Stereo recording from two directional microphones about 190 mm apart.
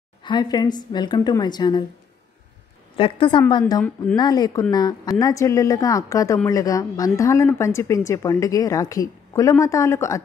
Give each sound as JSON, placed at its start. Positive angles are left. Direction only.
{"t": 0.2, "sound": "a woman's voice", "side_deg": 25}
{"t": 3.0, "sound": "a woman's voice", "side_deg": 25}
{"t": 3.8, "sound": "speech", "side_deg": 10}
{"t": 4.2, "sound": "a woman's voice", "side_deg": 20}